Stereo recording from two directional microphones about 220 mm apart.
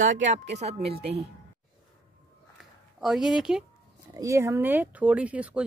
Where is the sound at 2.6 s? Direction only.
Centre (ahead or behind).